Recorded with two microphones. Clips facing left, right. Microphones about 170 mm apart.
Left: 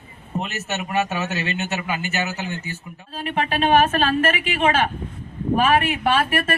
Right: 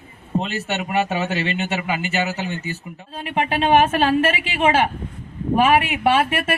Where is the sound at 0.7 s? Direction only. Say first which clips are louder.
Right 1 dB; 30° right (ahead or behind).